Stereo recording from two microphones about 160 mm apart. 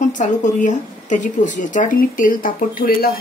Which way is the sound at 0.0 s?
50° left (ahead or behind).